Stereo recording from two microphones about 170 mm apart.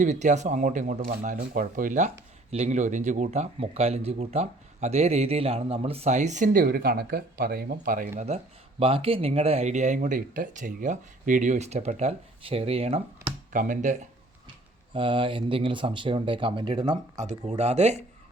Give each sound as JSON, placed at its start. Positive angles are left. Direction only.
{"t": 0.0, "sound": "speech", "side_deg": -45}
{"t": 8.8, "sound": "speech", "side_deg": -35}
{"t": 13.5, "sound": "speech", "side_deg": -50}
{"t": 14.9, "sound": "speech", "side_deg": -30}
{"t": 17.2, "sound": "speech", "side_deg": -45}